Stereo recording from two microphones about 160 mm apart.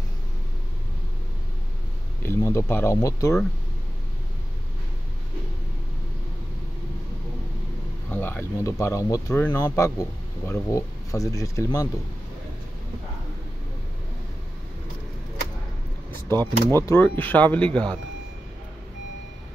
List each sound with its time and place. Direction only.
2.2 s speech: 15° left (ahead or behind)
8.1 s speech: 15° left (ahead or behind)
16.1 s speech: 15° left (ahead or behind)